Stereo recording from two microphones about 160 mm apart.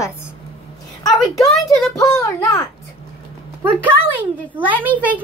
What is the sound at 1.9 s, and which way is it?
Speech, 20° left (ahead or behind).